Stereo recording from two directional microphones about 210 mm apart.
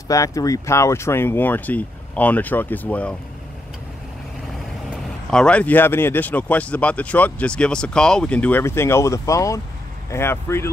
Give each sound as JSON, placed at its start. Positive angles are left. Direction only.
{"t": 0.1, "sound": "speech", "side_deg": 15}
{"t": 5.3, "sound": "speech", "side_deg": 5}